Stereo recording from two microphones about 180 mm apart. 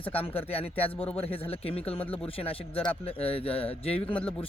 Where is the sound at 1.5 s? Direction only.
35° left (ahead or behind).